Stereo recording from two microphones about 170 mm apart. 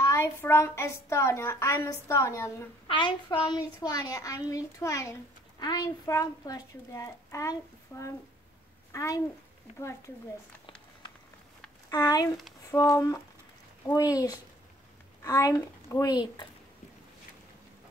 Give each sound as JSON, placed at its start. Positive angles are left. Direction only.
{"t": 0.0, "sound": "a woman's voice", "side_deg": 15}
{"t": 2.9, "sound": "a woman's voice", "side_deg": 30}
{"t": 11.9, "sound": "a woman's voice", "side_deg": 20}